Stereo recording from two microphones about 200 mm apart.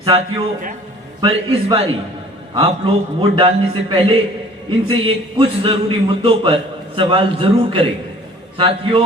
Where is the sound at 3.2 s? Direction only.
25° right (ahead or behind).